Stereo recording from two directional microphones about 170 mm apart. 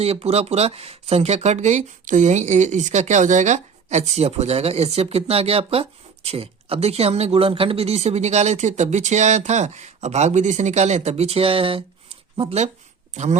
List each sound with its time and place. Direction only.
0.0 s speech: 35° right (ahead or behind)